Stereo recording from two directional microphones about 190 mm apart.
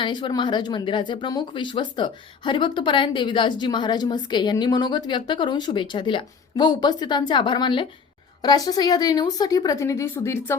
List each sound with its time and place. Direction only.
0.0 s speech: 25° left (ahead or behind)